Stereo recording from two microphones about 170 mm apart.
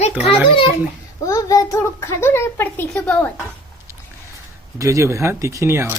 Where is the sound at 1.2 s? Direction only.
20° left (ahead or behind).